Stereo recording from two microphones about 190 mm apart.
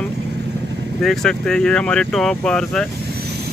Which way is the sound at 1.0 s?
5° left (ahead or behind).